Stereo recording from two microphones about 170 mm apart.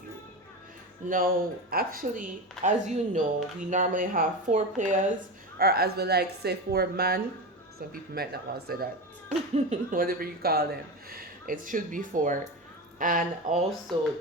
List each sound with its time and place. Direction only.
1.0 s speech: 55° right (ahead or behind)
5.5 s a woman's voice: 65° right (ahead or behind)
9.3 s speech: 45° right (ahead or behind)